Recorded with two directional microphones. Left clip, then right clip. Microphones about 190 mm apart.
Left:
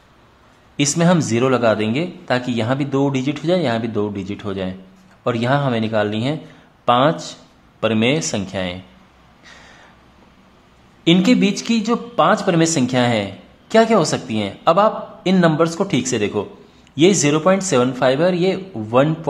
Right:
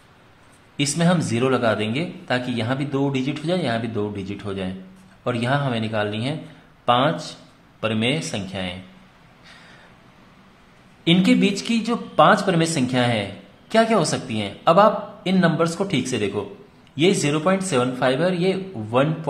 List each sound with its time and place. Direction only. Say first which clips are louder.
0.7 s speech: left 5 dB; 25° left (ahead or behind)
11.1 s speech: left 3 dB; 20° left (ahead or behind)